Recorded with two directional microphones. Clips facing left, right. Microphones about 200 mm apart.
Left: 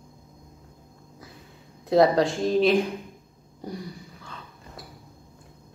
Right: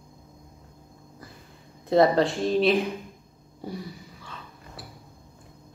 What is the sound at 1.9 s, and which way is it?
A woman's voice, centre (ahead or behind).